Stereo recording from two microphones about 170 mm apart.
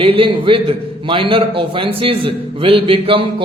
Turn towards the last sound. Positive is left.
turn(degrees=-30)  # may be behind; listen again after turning